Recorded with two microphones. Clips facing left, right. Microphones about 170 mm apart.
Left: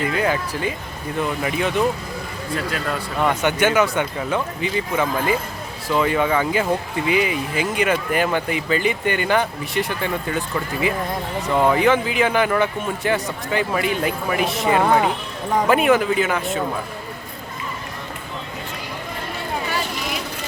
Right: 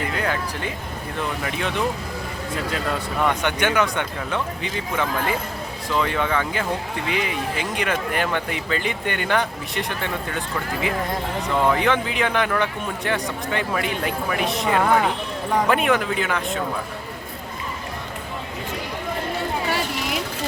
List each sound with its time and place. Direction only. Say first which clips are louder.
0.2 s a man's voice: left 4 dB; 5° left (ahead or behind)
2.6 s speech: left 1 dB; 20° right (ahead or behind)
3.2 s a man's voice: left 4 dB; 5° left (ahead or behind)